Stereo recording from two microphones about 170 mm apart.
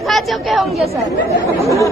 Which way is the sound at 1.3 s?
20° right (ahead or behind).